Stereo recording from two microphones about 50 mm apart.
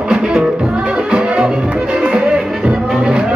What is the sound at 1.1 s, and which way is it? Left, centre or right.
Music, right.